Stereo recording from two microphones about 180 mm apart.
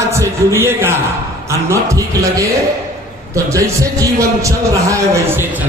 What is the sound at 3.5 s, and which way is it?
A man's voice, 20° right (ahead or behind).